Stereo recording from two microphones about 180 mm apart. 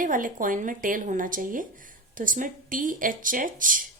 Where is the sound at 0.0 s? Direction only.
50° right (ahead or behind).